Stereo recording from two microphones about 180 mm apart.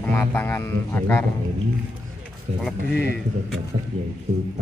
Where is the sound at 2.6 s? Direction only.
5° left (ahead or behind).